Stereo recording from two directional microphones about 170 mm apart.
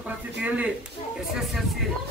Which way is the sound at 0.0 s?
10° right (ahead or behind).